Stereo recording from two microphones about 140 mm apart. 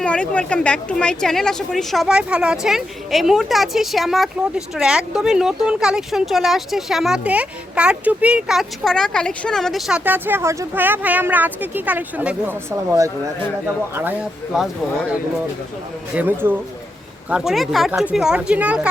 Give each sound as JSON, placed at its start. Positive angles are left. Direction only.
{"t": 0.0, "sound": "a woman's voice", "side_deg": 10}
{"t": 10.0, "sound": "speech", "side_deg": -15}
{"t": 12.9, "sound": "speech", "side_deg": -25}
{"t": 14.5, "sound": "a woman's voice", "side_deg": -5}
{"t": 16.1, "sound": "a woman's voice", "side_deg": -15}